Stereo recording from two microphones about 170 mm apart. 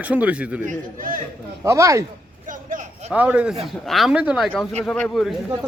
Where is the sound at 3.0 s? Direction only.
10° right (ahead or behind).